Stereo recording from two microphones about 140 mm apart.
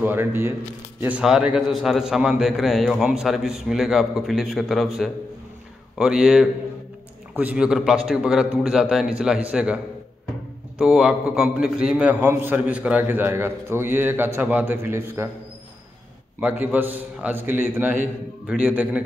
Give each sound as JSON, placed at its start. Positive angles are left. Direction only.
{"t": 0.0, "sound": "a man's voice", "side_deg": -15}
{"t": 1.0, "sound": "a man's voice", "side_deg": -5}
{"t": 10.8, "sound": "a man's voice", "side_deg": -5}
{"t": 16.3, "sound": "a man's voice", "side_deg": -10}